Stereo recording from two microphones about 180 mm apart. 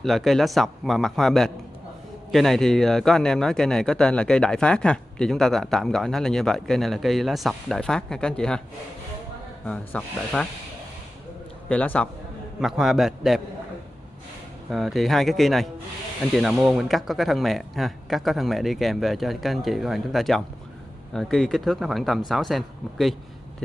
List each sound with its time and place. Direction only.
0.0 s speech: centre (ahead or behind)
9.7 s speech: 5° left (ahead or behind)
11.7 s a man's voice: 5° left (ahead or behind)
14.7 s speech: centre (ahead or behind)